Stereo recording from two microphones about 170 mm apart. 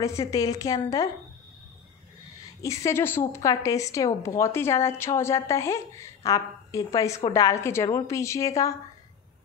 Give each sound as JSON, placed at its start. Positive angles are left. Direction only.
{"t": 0.0, "sound": "speech", "side_deg": 20}
{"t": 2.6, "sound": "a woman's voice", "side_deg": 15}